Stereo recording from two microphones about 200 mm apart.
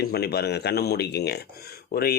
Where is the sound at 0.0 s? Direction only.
50° left (ahead or behind).